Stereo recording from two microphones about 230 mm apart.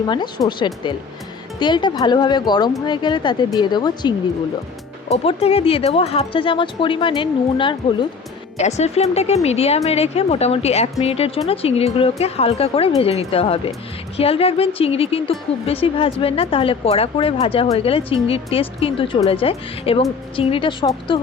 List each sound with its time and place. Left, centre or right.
0.1 s a woman's voice: centre
5.1 s a woman's voice: left